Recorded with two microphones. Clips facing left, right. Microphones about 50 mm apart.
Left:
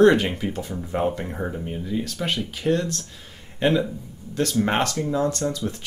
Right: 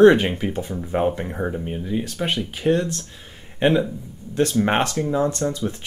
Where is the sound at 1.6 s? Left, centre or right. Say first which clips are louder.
Right 2 dB; right.